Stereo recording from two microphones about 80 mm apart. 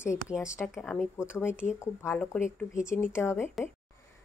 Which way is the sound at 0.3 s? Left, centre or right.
Centre.